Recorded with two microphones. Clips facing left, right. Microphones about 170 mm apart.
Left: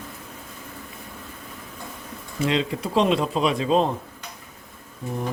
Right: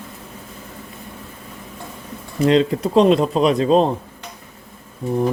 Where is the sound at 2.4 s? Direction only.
40° right (ahead or behind).